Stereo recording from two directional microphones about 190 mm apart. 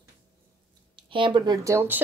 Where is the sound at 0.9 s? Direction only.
25° right (ahead or behind).